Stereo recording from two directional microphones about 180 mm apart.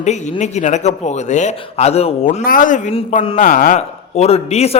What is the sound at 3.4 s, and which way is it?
A man's voice, 50° left (ahead or behind).